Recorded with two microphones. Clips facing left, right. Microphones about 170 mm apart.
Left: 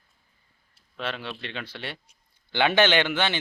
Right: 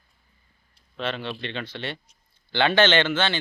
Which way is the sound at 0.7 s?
5° left (ahead or behind).